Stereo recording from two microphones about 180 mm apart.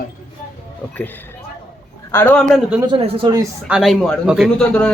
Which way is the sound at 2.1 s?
10° left (ahead or behind).